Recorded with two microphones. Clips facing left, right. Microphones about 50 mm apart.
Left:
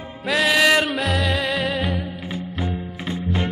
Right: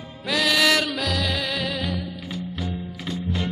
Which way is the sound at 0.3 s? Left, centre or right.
Centre.